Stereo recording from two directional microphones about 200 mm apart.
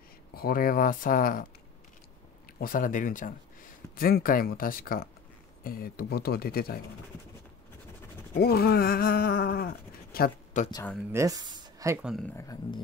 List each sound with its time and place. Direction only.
0.3 s speech: 50° left (ahead or behind)
2.6 s speech: 40° left (ahead or behind)
8.4 s speech: 50° left (ahead or behind)
11.1 s speech: 15° right (ahead or behind)
12.0 s speech: centre (ahead or behind)
12.4 s speech: 20° left (ahead or behind)